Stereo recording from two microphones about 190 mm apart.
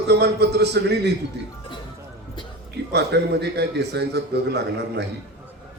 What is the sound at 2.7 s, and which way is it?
A man's voice, 60° right (ahead or behind).